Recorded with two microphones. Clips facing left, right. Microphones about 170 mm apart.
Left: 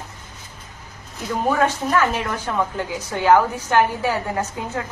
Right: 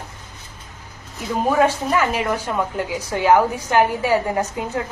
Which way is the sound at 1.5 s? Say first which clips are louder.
Right 2 dB; 10° right (ahead or behind).